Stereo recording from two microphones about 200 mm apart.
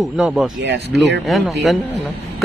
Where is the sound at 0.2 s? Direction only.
5° right (ahead or behind).